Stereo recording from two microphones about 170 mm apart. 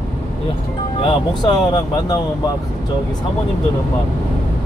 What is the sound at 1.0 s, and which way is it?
Speech, 25° left (ahead or behind).